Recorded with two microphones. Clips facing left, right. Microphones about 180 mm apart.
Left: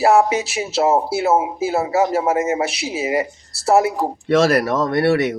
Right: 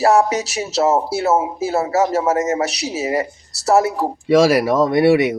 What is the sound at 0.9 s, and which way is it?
Speech, 15° left (ahead or behind).